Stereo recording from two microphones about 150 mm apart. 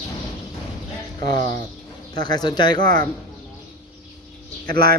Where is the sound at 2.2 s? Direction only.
30° left (ahead or behind).